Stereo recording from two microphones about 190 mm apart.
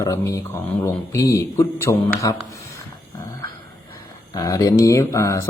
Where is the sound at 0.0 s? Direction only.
15° left (ahead or behind).